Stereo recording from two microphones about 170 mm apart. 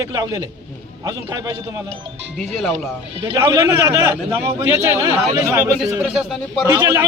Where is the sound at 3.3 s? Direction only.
20° right (ahead or behind).